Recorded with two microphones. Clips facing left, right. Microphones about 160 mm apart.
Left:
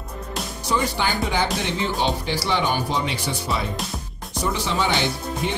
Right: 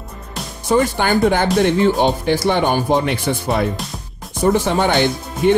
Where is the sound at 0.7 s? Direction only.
50° right (ahead or behind).